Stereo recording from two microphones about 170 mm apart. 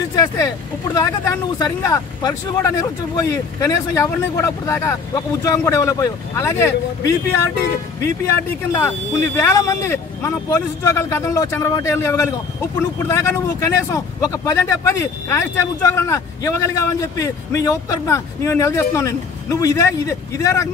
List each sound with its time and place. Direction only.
0.9 s speech: 20° left (ahead or behind)